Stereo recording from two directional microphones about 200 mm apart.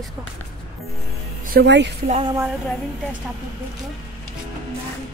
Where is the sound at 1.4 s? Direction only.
55° right (ahead or behind).